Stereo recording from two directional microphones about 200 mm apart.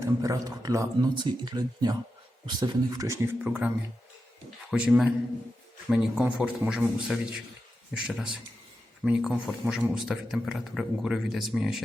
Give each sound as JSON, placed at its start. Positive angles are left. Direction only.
{"t": 0.0, "sound": "speech", "side_deg": -15}
{"t": 4.7, "sound": "a man's voice", "side_deg": -5}